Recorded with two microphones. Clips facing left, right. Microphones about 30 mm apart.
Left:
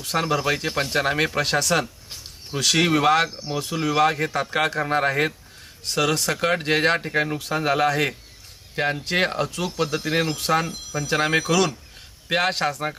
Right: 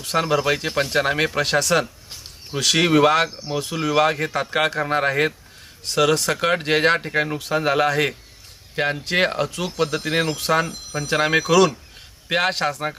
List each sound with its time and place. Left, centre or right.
0.0 s speech: centre